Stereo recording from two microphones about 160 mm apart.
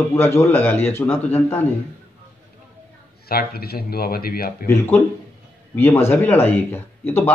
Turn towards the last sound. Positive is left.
turn(degrees=15)  # may be behind; listen again after turning